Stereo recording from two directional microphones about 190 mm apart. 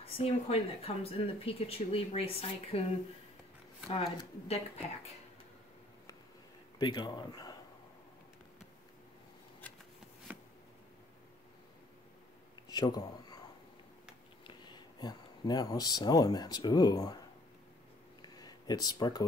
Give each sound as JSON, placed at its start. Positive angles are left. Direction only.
{"t": 0.0, "sound": "speech", "side_deg": 30}
{"t": 4.2, "sound": "speech", "side_deg": 35}
{"t": 6.8, "sound": "speech", "side_deg": 25}
{"t": 12.6, "sound": "speech", "side_deg": 20}
{"t": 14.4, "sound": "speech", "side_deg": 25}
{"t": 18.2, "sound": "a sound", "side_deg": 20}